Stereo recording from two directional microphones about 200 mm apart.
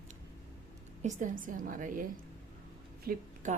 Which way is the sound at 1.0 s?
40° right (ahead or behind).